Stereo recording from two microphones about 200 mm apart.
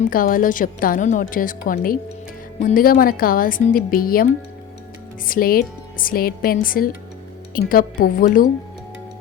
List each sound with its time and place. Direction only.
0.0 s a woman's voice: 45° left (ahead or behind)